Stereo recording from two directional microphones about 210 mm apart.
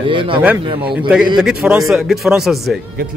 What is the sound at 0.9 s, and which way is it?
A man's voice, 5° right (ahead or behind).